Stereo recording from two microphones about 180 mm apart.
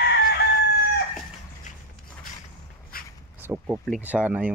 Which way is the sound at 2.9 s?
55° left (ahead or behind).